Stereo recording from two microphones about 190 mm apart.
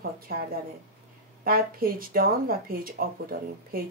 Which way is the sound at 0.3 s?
50° right (ahead or behind).